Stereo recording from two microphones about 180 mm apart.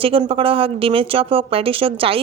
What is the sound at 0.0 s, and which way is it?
Speech, 30° right (ahead or behind).